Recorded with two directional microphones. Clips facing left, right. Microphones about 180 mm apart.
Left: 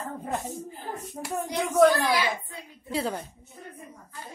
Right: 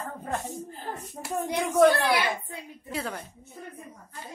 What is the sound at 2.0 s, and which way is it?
Speech, 65° right (ahead or behind).